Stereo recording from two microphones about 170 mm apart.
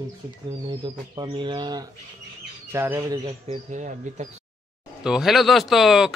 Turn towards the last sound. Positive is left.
turn(degrees=0)  # may be behind; listen again after turning